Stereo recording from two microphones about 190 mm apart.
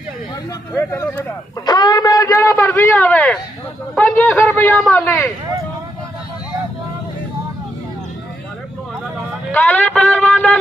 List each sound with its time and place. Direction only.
0.7 s a man's voice: 10° left (ahead or behind)
9.5 s a man's voice: 10° left (ahead or behind)